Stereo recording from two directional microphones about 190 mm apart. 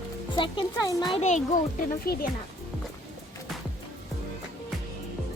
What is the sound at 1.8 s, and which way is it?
Speech, 50° left (ahead or behind).